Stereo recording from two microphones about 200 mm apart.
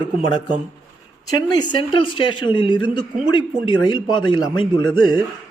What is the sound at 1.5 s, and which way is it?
Speech, 25° left (ahead or behind).